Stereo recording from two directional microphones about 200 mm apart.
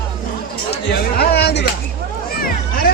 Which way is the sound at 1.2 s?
55° left (ahead or behind).